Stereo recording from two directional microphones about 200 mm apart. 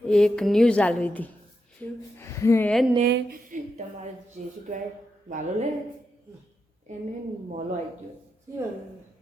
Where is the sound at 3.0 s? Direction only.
50° right (ahead or behind).